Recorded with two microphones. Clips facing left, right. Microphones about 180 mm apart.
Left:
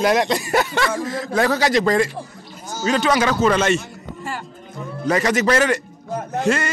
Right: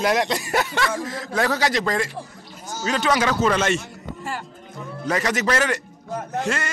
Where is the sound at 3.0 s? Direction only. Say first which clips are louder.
Left 2 dB; 40° left (ahead or behind).